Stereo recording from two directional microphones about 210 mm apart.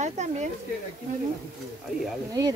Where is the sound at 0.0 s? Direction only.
35° right (ahead or behind).